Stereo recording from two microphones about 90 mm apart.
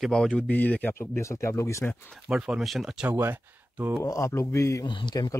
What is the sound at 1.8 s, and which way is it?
Speech, 20° left (ahead or behind).